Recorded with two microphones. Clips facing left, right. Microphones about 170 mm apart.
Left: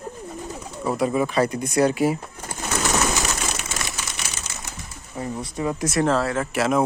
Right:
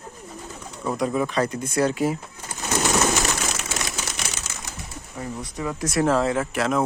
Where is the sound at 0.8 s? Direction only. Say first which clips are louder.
Left 2 dB; 5° left (ahead or behind).